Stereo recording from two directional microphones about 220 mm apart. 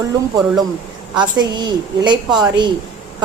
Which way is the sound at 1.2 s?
20° right (ahead or behind).